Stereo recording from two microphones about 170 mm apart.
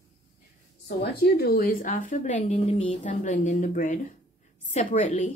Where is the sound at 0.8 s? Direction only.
70° left (ahead or behind); by 5.3 s 45° left (ahead or behind).